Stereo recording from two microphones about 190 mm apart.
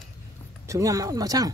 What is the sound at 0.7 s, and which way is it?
Speech, 15° right (ahead or behind).